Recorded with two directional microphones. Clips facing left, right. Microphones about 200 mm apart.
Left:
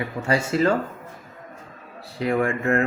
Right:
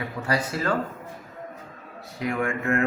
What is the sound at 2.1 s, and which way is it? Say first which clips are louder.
Speech: left 4 dB; 30° left (ahead or behind).